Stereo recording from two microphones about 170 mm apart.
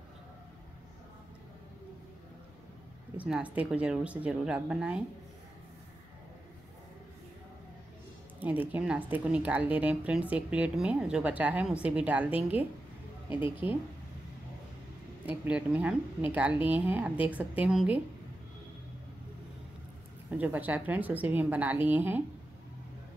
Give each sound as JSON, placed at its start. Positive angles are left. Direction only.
{"t": 3.2, "sound": "a woman's voice", "side_deg": -5}
{"t": 8.4, "sound": "a woman's voice", "side_deg": -10}
{"t": 15.2, "sound": "a woman's voice", "side_deg": -10}
{"t": 20.2, "sound": "a woman's voice", "side_deg": -10}